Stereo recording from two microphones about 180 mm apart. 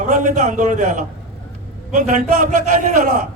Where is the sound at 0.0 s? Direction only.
45° right (ahead or behind).